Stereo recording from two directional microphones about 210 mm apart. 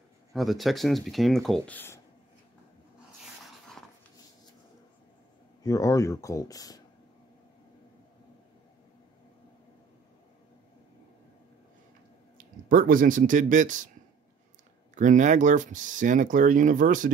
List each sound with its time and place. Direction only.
0.3 s speech: centre (ahead or behind)
5.6 s speech: 15° left (ahead or behind)
12.6 s speech: 40° right (ahead or behind)
15.0 s speech: 35° right (ahead or behind)